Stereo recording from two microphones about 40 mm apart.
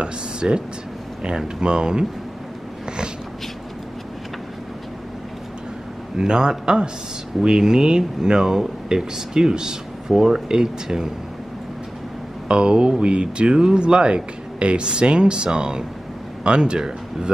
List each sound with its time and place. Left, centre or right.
0.0 s speech: right
1.6 s speech: right
6.1 s speech: centre
12.4 s speech: right